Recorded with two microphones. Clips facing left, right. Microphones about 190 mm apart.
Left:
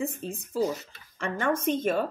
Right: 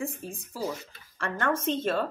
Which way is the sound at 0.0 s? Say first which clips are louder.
Left 3 dB; 20° left (ahead or behind).